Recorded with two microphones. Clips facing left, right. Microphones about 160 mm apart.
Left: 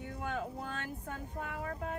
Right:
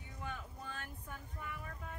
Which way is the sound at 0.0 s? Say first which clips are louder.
Left 9 dB; 75° left (ahead or behind).